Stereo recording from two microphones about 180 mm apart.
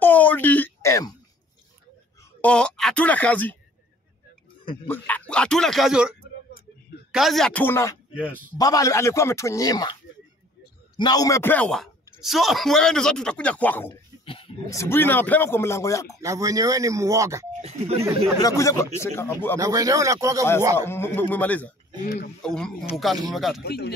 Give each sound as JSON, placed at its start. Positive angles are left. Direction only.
{"t": 0.0, "sound": "a sound", "side_deg": 10}
{"t": 2.4, "sound": "speech", "side_deg": 5}
{"t": 4.8, "sound": "a man's voice", "side_deg": 10}
{"t": 6.5, "sound": "a sound", "side_deg": 60}
{"t": 7.1, "sound": "a man's voice", "side_deg": 0}
{"t": 11.0, "sound": "a man's voice", "side_deg": 20}
{"t": 14.2, "sound": "wild animals", "side_deg": 30}
{"t": 14.7, "sound": "speech", "side_deg": 15}
{"t": 16.2, "sound": "speech", "side_deg": -20}
{"t": 17.5, "sound": "speech", "side_deg": -40}
{"t": 18.4, "sound": "speech", "side_deg": 15}
{"t": 19.6, "sound": "speech", "side_deg": -20}
{"t": 20.7, "sound": "a man's voice", "side_deg": 15}
{"t": 23.6, "sound": "speech", "side_deg": 65}